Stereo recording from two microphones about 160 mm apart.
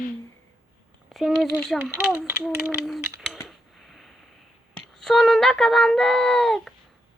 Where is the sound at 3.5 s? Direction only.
Centre (ahead or behind).